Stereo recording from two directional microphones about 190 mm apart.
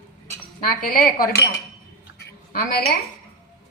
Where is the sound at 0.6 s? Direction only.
50° left (ahead or behind).